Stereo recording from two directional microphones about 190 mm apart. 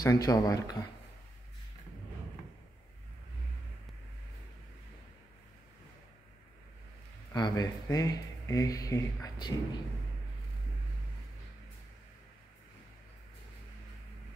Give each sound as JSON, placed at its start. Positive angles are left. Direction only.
{"t": 0.0, "sound": "speech", "side_deg": 20}
{"t": 7.3, "sound": "speech", "side_deg": 20}